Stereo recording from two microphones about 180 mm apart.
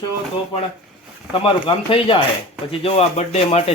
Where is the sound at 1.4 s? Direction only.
30° left (ahead or behind).